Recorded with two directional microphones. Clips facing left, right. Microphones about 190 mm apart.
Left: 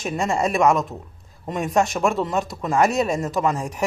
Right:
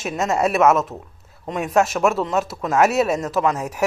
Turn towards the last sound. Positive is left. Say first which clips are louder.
# right 2 dB
turn(degrees=-5)  # may be behind; listen again after turning